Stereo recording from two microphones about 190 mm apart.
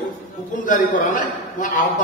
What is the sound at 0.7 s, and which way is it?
A man's voice, 45° left (ahead or behind).